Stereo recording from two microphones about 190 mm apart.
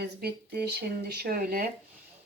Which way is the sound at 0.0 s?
55° right (ahead or behind).